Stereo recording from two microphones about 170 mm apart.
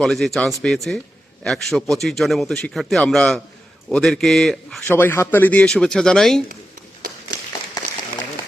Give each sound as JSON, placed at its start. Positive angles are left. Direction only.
{"t": 0.0, "sound": "a man's voice", "side_deg": 0}
{"t": 4.9, "sound": "speech", "side_deg": 10}
{"t": 7.0, "sound": "tap", "side_deg": -55}